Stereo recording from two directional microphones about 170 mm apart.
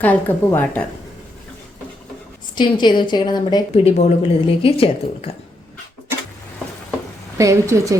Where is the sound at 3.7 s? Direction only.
40° left (ahead or behind).